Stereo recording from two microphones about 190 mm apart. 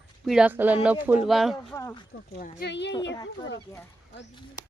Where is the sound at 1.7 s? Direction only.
15° left (ahead or behind).